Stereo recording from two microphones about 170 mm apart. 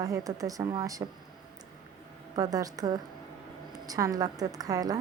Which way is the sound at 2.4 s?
20° right (ahead or behind).